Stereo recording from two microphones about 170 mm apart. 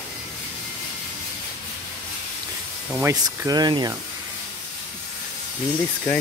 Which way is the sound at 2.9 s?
15° right (ahead or behind).